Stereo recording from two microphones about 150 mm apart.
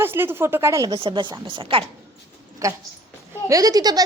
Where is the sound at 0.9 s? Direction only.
35° right (ahead or behind).